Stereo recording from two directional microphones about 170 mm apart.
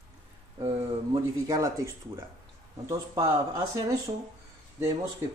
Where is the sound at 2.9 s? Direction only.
20° right (ahead or behind).